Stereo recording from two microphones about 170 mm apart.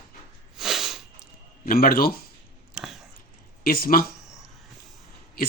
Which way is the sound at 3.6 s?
60° left (ahead or behind).